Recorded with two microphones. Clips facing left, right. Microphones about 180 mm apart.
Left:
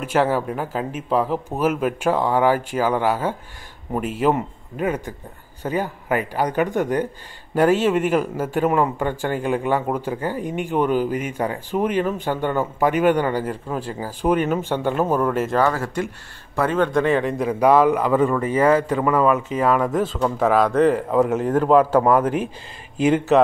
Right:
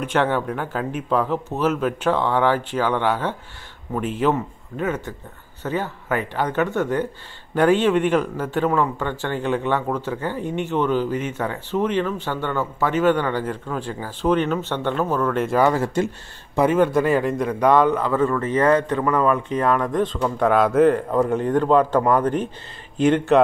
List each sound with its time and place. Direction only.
0.0 s a man's voice: 5° left (ahead or behind)
15.6 s speech: 20° right (ahead or behind)
16.5 s a man's voice: 10° right (ahead or behind); by 23.4 s 5° left (ahead or behind)